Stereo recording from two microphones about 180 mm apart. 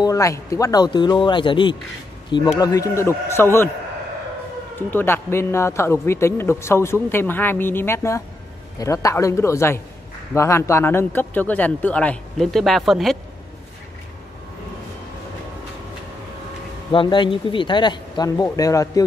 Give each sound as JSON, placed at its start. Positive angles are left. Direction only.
{"t": 0.0, "sound": "a man's voice", "side_deg": 15}
{"t": 4.7, "sound": "a man's voice", "side_deg": 10}
{"t": 16.9, "sound": "speech", "side_deg": 25}